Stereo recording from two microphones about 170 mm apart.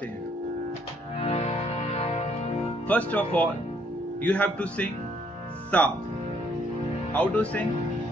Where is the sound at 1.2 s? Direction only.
35° left (ahead or behind).